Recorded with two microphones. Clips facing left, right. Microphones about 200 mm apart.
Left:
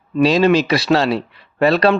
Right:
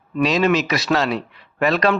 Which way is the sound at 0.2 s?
30° left (ahead or behind).